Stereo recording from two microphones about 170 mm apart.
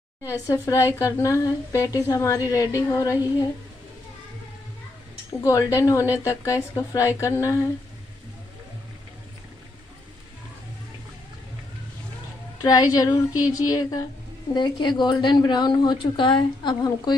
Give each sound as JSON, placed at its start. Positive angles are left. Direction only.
{"t": 0.3, "sound": "a woman's voice", "side_deg": 20}
{"t": 5.4, "sound": "a woman's voice", "side_deg": 20}
{"t": 12.6, "sound": "a woman's voice", "side_deg": 20}